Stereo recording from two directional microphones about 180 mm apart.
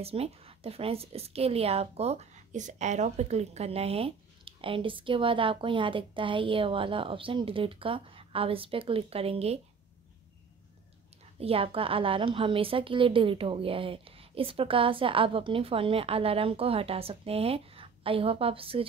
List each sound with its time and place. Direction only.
0.0 s a woman's voice: 35° right (ahead or behind)
11.3 s a woman's voice: 35° right (ahead or behind)